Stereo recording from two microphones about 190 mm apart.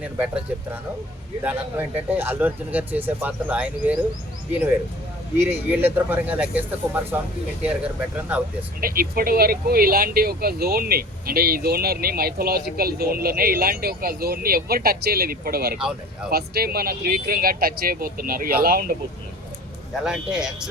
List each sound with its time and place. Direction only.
0.0 s speech: 5° right (ahead or behind)
5.4 s speech: 10° right (ahead or behind)
8.8 s speech: 50° right (ahead or behind)
20.1 s speech: 5° right (ahead or behind)